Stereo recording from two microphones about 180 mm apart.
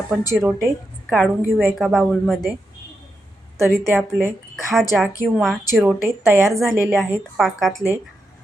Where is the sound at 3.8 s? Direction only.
15° right (ahead or behind).